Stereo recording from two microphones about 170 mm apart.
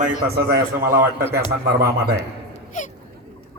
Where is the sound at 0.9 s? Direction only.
15° right (ahead or behind).